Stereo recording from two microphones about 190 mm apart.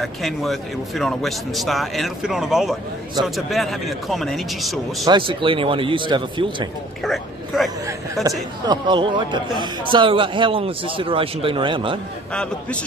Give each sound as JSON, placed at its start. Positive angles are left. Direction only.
{"t": 0.0, "sound": "a man's voice", "side_deg": 0}
{"t": 5.0, "sound": "speech", "side_deg": -25}
{"t": 7.0, "sound": "a man's voice", "side_deg": 0}
{"t": 8.6, "sound": "speech", "side_deg": -25}